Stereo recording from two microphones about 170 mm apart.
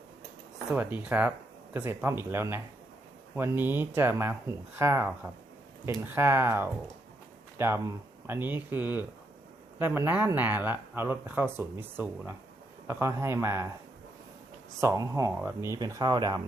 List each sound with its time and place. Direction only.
0.7 s speech: 10° right (ahead or behind)
14.8 s speech: 20° right (ahead or behind)